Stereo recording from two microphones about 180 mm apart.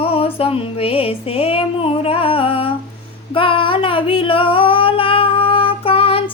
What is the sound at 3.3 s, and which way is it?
Singing, 30° left (ahead or behind).